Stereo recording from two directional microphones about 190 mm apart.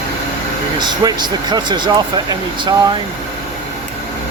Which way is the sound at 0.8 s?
25° right (ahead or behind).